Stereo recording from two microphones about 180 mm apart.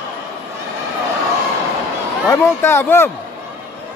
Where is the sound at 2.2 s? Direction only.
15° left (ahead or behind).